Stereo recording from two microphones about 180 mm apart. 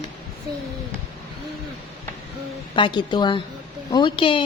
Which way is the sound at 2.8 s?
25° left (ahead or behind).